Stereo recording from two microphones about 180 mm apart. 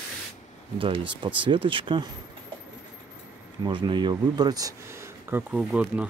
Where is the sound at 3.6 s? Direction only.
25° right (ahead or behind).